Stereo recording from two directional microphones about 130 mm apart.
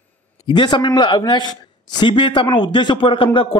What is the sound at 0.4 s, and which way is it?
A man's voice, 35° left (ahead or behind).